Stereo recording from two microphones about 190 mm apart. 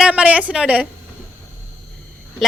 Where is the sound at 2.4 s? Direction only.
Centre (ahead or behind).